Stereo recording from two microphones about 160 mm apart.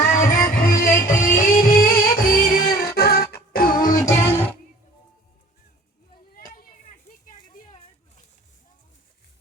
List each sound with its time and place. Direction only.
0.1 s music: 60° left (ahead or behind)
4.0 s music: 15° left (ahead or behind)